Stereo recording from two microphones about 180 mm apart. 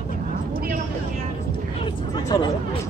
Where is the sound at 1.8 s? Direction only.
25° left (ahead or behind).